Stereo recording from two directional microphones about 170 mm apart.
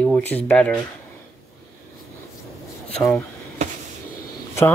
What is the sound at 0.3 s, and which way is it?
Speech, 10° left (ahead or behind).